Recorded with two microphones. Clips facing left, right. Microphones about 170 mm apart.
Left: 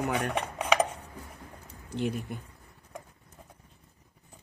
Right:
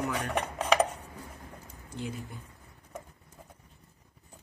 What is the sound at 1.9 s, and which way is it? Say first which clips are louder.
Speech: left 7 dB; 70° left (ahead or behind).